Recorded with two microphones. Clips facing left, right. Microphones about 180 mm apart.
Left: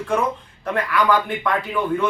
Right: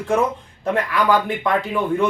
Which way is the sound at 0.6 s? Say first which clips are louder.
Right 1 dB; 25° right (ahead or behind).